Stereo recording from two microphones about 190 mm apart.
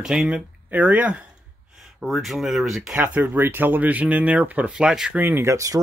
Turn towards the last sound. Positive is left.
turn(degrees=-15)  # may be behind; listen again after turning